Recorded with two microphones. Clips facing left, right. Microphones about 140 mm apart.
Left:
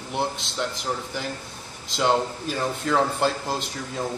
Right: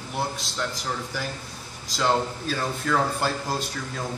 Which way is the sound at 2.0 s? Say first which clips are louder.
Left 2 dB; 20° left (ahead or behind).